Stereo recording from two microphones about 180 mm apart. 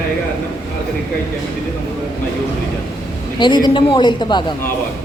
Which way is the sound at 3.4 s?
25° left (ahead or behind).